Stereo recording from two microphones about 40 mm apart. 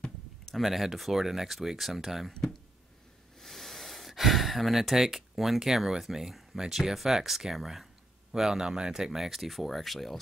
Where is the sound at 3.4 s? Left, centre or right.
Centre.